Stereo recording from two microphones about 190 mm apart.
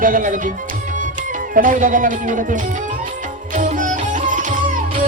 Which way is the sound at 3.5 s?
40° right (ahead or behind).